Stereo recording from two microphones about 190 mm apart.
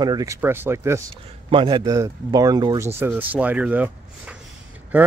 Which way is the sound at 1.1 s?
25° right (ahead or behind).